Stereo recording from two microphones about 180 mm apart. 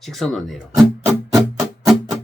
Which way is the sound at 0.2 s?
Centre (ahead or behind).